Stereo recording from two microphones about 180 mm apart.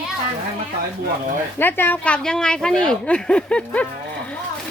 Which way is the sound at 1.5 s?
10° left (ahead or behind).